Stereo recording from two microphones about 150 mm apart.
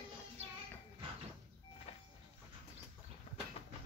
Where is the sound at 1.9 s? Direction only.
45° left (ahead or behind).